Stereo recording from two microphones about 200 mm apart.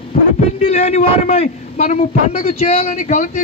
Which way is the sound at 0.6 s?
30° left (ahead or behind).